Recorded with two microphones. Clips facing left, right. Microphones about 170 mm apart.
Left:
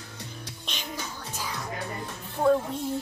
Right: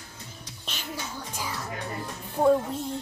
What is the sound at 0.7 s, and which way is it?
Music, 10° right (ahead or behind).